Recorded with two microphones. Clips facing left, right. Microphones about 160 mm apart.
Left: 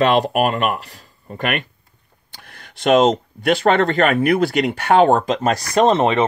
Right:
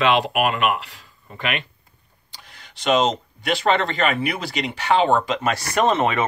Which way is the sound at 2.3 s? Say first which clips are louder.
Left 3 dB; 55° left (ahead or behind).